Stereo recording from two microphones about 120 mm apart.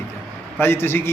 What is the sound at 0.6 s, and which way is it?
Speech, 20° left (ahead or behind).